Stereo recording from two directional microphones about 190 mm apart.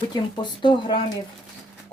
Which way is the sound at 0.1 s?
25° left (ahead or behind).